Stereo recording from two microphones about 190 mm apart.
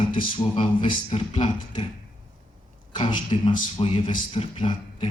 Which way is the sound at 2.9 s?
25° left (ahead or behind).